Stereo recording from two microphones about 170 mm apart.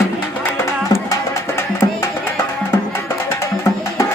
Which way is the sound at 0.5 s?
15° left (ahead or behind).